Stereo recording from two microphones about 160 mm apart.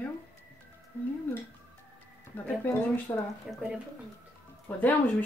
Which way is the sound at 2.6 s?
15° left (ahead or behind).